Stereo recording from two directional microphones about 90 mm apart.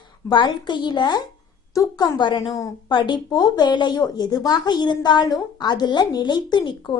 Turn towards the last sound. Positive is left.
turn(degrees=55)  # may be behind; listen again after turning